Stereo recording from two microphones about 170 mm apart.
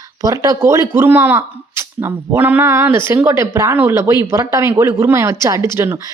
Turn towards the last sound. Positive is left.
turn(degrees=-15)  # may be behind; listen again after turning